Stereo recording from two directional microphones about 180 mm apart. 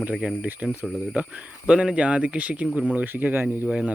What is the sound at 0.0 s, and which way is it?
Speech, 5° right (ahead or behind).